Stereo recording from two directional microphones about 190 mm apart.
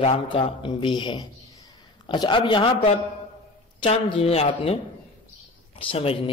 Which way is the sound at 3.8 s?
30° left (ahead or behind).